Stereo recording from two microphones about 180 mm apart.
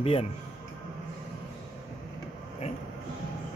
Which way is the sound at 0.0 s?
35° left (ahead or behind).